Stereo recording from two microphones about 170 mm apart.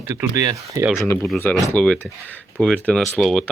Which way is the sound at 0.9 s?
15° left (ahead or behind).